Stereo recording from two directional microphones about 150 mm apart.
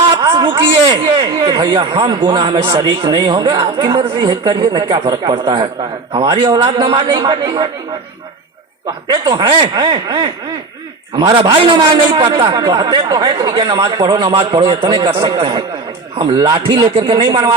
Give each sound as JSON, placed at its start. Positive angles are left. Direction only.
{"t": 0.1, "sound": "a man's voice", "side_deg": -30}
{"t": 9.0, "sound": "a man's voice", "side_deg": -30}